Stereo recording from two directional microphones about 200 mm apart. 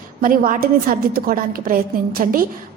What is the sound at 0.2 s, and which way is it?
A woman's voice, 45° right (ahead or behind).